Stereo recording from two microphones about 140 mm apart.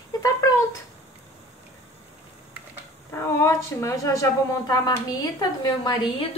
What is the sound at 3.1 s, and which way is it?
A woman's voice, 20° left (ahead or behind).